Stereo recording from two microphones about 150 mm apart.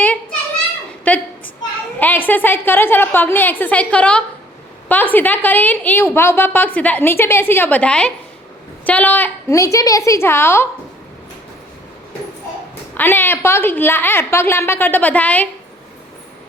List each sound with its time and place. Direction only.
1.1 s a sound: 10° left (ahead or behind)
2.0 s a woman's voice: 10° left (ahead or behind)
12.9 s a woman's voice: 15° left (ahead or behind)